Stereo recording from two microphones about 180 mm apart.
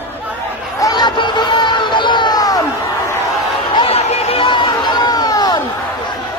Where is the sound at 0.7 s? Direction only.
20° left (ahead or behind).